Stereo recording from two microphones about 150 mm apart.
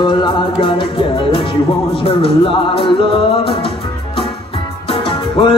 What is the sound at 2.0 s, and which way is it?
Music, 35° left (ahead or behind).